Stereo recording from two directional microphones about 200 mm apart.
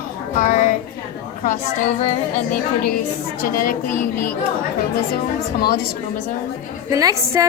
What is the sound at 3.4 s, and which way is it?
Speech, 45° left (ahead or behind).